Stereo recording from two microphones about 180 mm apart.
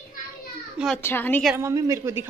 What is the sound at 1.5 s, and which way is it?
Speech, 20° right (ahead or behind).